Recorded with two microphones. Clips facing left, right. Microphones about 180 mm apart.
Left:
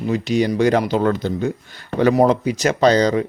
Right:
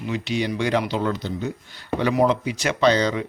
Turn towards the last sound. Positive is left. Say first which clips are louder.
# left 4 dB
turn(degrees=40)  # may be behind; listen again after turning